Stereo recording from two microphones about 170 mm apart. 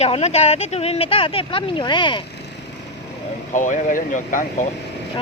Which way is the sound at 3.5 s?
50° left (ahead or behind).